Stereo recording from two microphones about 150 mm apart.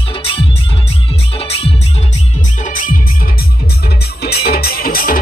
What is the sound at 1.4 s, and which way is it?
Music, 40° left (ahead or behind).